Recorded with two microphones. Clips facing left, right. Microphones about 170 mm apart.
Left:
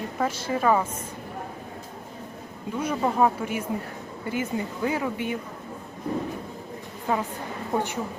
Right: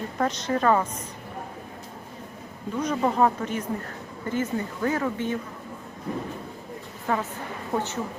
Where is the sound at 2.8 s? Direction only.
5° left (ahead or behind).